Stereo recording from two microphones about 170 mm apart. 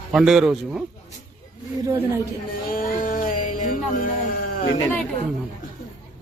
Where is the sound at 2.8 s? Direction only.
50° left (ahead or behind).